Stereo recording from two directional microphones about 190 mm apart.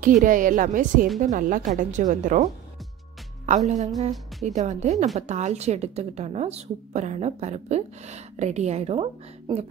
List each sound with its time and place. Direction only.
0.0 s a woman's voice: 45° right (ahead or behind)
3.4 s a woman's voice: 35° right (ahead or behind)